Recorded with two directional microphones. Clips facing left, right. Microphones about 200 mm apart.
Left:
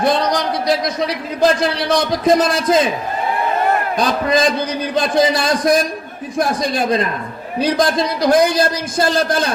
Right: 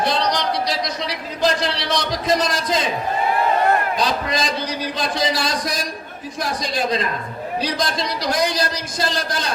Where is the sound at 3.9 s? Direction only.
55° left (ahead or behind).